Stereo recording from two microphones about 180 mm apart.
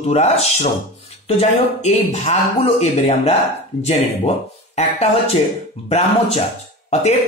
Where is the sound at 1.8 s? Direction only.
40° left (ahead or behind).